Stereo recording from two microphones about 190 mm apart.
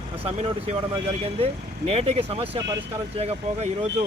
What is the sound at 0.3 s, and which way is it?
Speech, 35° right (ahead or behind).